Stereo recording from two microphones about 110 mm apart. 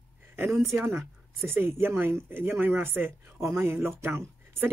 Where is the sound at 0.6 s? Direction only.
20° right (ahead or behind).